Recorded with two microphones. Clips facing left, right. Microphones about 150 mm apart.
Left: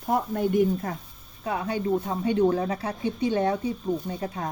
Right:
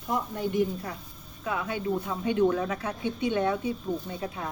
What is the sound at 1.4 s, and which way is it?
Speech, 35° left (ahead or behind).